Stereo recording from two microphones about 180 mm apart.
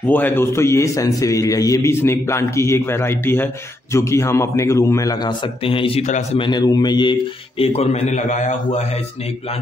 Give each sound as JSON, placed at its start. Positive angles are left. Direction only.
{"t": 0.0, "sound": "a man's voice", "side_deg": 10}
{"t": 6.4, "sound": "a man's voice", "side_deg": 25}